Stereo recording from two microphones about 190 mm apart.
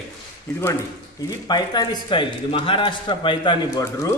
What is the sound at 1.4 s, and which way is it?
A man's voice, 20° left (ahead or behind).